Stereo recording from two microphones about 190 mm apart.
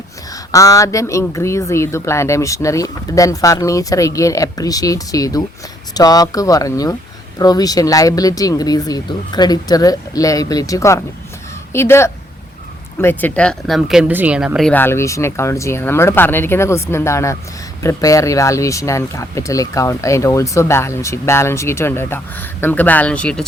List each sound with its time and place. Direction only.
0.5 s speech: 15° left (ahead or behind); by 14.7 s 5° right (ahead or behind)
14.7 s speech: 10° left (ahead or behind)